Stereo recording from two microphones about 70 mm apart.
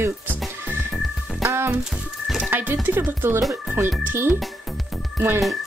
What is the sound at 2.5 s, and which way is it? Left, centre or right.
Music, right.